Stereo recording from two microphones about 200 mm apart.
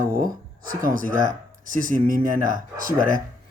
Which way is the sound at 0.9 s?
45° right (ahead or behind).